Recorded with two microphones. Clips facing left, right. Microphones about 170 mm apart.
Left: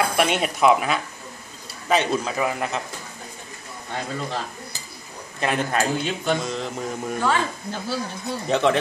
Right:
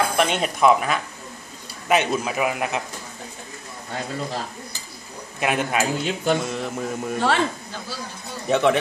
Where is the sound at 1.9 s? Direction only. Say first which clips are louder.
Right 1 dB; 10° right (ahead or behind).